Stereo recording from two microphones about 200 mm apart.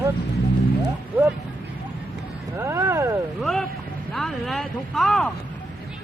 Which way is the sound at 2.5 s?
15° right (ahead or behind).